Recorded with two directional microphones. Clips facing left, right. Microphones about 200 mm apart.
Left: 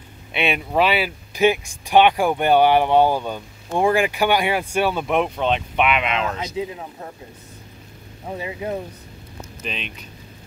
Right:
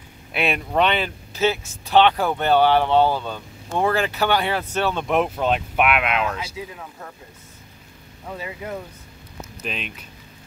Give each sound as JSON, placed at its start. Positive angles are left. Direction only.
{"t": 0.3, "sound": "speech", "side_deg": 0}
{"t": 6.3, "sound": "speech", "side_deg": 25}
{"t": 8.3, "sound": "speech", "side_deg": 20}
{"t": 9.6, "sound": "speech", "side_deg": -5}